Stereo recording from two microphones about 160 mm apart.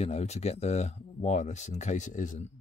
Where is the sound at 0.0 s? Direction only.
40° left (ahead or behind).